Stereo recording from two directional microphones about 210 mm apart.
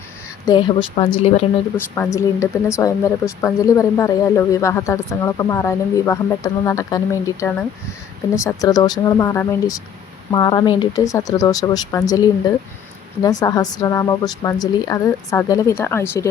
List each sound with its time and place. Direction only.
0.4 s a woman's voice: 20° left (ahead or behind)
2.0 s a woman's voice: 15° left (ahead or behind)
13.2 s a woman's voice: 15° left (ahead or behind)